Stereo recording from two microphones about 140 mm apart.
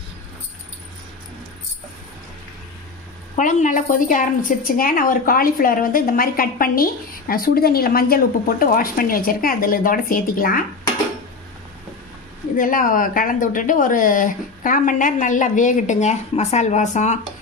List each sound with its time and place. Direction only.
3.3 s a woman's voice: 65° left (ahead or behind); by 10.6 s 90° left
12.5 s speech: 75° left (ahead or behind); by 17.2 s 60° left (ahead or behind)